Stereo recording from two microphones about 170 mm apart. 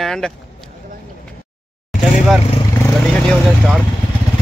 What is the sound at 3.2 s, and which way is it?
Vehicle, centre (ahead or behind).